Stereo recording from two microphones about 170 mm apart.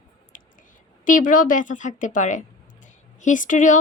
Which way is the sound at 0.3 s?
50° left (ahead or behind).